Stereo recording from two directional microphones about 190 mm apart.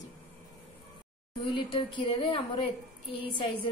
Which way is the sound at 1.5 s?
25° left (ahead or behind).